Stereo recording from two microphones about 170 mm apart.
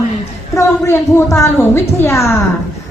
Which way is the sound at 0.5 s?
15° left (ahead or behind).